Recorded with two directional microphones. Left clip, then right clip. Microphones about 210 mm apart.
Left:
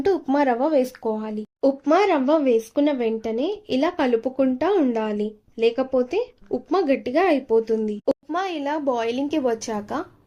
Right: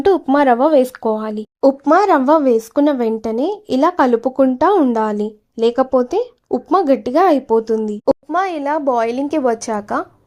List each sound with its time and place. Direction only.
0.0 s speech: 30° right (ahead or behind)